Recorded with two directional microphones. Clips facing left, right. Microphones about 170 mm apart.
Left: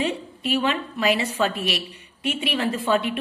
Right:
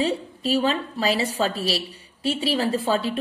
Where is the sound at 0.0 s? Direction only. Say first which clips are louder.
Right 2 dB; 35° right (ahead or behind).